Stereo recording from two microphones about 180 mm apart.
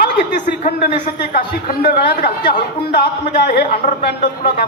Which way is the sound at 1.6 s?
60° left (ahead or behind).